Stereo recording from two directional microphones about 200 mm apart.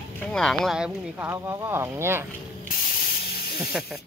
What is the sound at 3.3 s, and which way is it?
Snake, 50° left (ahead or behind).